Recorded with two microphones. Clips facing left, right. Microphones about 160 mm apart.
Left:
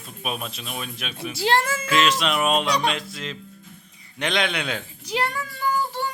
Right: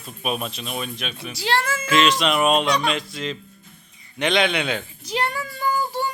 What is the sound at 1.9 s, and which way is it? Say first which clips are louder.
Speech: right 4 dB; centre (ahead or behind).